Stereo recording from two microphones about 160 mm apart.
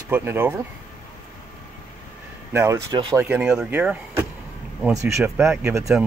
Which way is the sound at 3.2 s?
5° right (ahead or behind).